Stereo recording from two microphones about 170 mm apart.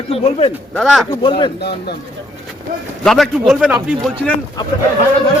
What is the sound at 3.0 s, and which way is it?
Speech, centre (ahead or behind).